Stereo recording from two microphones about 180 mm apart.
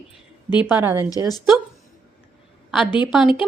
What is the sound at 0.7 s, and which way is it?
Speech, 15° right (ahead or behind).